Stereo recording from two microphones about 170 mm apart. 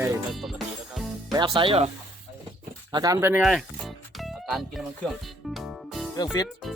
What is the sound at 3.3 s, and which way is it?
Music, centre (ahead or behind).